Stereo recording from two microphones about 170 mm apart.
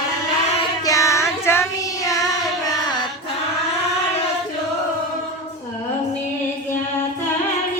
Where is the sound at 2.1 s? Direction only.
20° left (ahead or behind).